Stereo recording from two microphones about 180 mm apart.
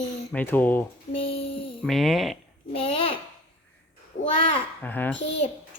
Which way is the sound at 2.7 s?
30° left (ahead or behind).